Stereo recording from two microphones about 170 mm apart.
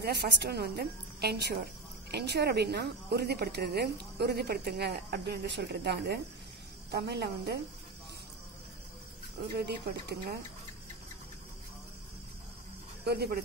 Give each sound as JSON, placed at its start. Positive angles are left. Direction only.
{"t": 0.0, "sound": "a woman's voice", "side_deg": -70}
{"t": 9.6, "sound": "a woman's voice", "side_deg": -75}
{"t": 13.0, "sound": "a woman's voice", "side_deg": -70}